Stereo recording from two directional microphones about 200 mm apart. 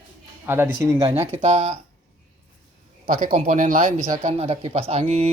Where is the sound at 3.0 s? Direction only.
45° right (ahead or behind).